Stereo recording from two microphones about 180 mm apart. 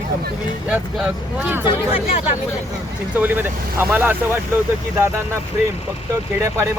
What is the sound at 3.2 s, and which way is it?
Speech, 10° right (ahead or behind).